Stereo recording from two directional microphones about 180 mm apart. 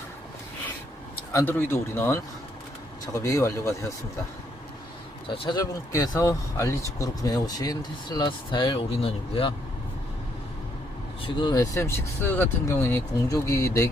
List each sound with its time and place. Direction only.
1.3 s speech: 15° left (ahead or behind)
5.3 s speech: 25° left (ahead or behind)
11.2 s speech: 25° left (ahead or behind)